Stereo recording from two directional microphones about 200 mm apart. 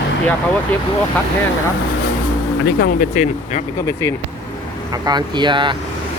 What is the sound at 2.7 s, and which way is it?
Speech, 45° left (ahead or behind).